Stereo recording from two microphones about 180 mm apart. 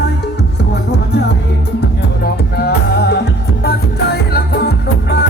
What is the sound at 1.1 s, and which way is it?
Music, 70° left (ahead or behind).